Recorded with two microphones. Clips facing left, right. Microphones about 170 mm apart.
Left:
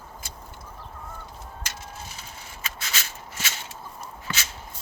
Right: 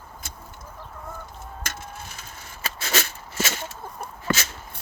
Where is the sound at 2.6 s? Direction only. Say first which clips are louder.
Right 8 dB; 55° right (ahead or behind).